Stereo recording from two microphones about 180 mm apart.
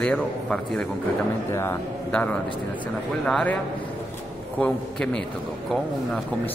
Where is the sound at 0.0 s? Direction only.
5° left (ahead or behind).